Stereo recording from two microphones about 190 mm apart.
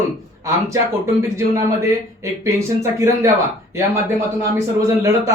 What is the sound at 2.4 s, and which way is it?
Speech, 15° right (ahead or behind).